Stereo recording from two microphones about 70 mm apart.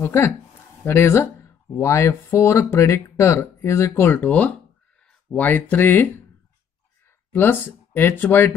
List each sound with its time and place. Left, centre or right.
0.0 s speech: left
4.3 s speech: centre
7.3 s speech: left